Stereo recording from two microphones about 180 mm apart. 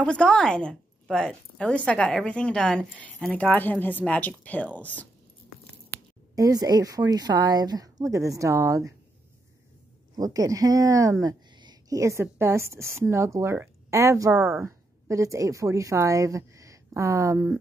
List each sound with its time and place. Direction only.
0.0 s a woman's voice: 5° left (ahead or behind)
6.3 s speech: 20° right (ahead or behind)
10.1 s a woman's voice: 20° right (ahead or behind)